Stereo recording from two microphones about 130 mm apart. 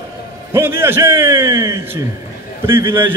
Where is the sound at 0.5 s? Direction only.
20° right (ahead or behind).